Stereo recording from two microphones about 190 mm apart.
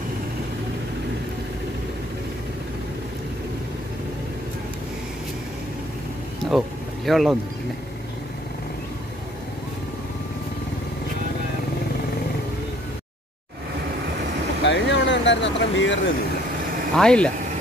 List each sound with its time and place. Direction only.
7.1 s speech: centre (ahead or behind)
14.6 s vehicle: 70° left (ahead or behind)
16.9 s speech: 5° left (ahead or behind)